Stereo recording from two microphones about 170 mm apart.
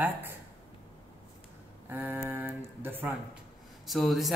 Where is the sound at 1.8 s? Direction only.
10° right (ahead or behind).